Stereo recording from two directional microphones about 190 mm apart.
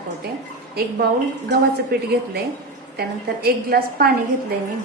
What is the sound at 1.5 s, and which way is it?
A woman's voice, 55° right (ahead or behind).